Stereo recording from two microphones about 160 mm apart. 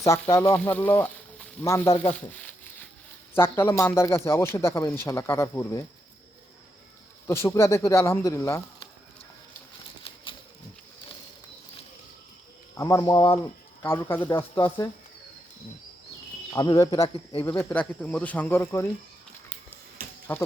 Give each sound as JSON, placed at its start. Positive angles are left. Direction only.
{"t": 0.0, "sound": "a man's voice", "side_deg": 20}
{"t": 2.3, "sound": "a sound", "side_deg": 10}
{"t": 3.3, "sound": "a man's voice", "side_deg": 15}
{"t": 7.3, "sound": "a man's voice", "side_deg": 15}
{"t": 12.7, "sound": "speech", "side_deg": 20}
{"t": 13.4, "sound": "speech", "side_deg": 15}
{"t": 16.5, "sound": "a man's voice", "side_deg": 25}
{"t": 20.3, "sound": "a man's voice", "side_deg": 10}